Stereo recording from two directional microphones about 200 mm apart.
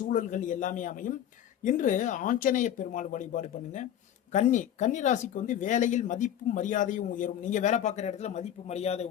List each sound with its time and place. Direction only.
0.1 s speech: 40° left (ahead or behind)